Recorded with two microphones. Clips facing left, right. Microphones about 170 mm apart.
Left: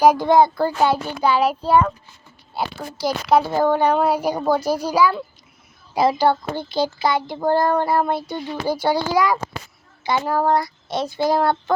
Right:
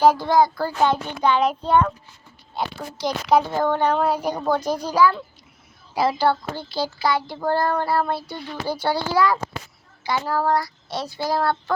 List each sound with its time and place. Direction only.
0.0 s child singing: 15° left (ahead or behind)
0.8 s a child's voice: 10° left (ahead or behind)
10.0 s child singing: 20° left (ahead or behind)